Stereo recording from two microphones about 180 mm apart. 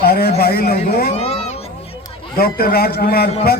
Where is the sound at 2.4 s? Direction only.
55° left (ahead or behind).